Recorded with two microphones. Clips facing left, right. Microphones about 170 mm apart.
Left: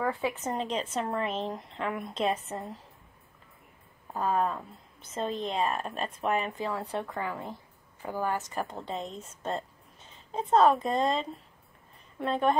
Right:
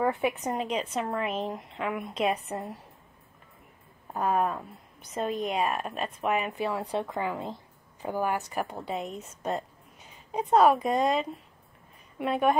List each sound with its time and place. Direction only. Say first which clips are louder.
0.0 s speech: right 3 dB; 20° right (ahead or behind)
4.1 s speech: right 1 dB; 15° right (ahead or behind)
6.7 s a woman's voice: right 3 dB; 15° right (ahead or behind)